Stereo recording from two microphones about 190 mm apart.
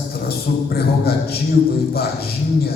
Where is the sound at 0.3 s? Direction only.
55° left (ahead or behind).